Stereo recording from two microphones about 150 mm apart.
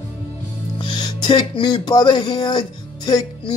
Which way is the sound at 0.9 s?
30° left (ahead or behind).